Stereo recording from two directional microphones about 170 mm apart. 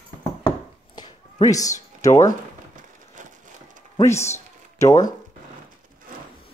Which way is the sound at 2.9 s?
50° right (ahead or behind).